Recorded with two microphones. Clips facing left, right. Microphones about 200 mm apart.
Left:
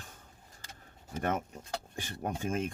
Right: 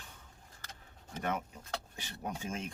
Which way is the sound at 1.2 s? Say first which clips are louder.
Left 4 dB; 45° left (ahead or behind).